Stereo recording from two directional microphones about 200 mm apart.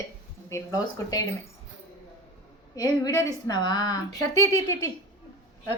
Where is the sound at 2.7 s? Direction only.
15° left (ahead or behind).